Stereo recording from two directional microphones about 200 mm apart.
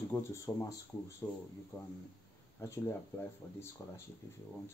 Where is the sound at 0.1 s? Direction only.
15° left (ahead or behind).